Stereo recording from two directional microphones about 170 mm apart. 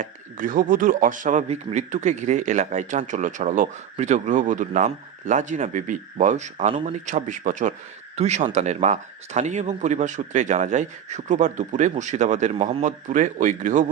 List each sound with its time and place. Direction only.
0.0 s a man's voice: 50° right (ahead or behind)